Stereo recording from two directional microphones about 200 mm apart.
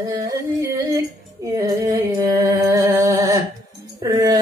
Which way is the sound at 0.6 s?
15° right (ahead or behind).